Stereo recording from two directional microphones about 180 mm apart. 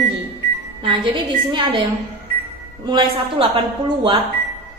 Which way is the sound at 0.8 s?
25° right (ahead or behind).